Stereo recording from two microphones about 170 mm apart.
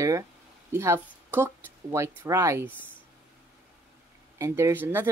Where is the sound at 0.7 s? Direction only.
15° right (ahead or behind).